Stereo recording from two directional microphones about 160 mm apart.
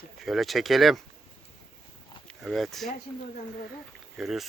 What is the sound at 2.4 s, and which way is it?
Speech, centre (ahead or behind).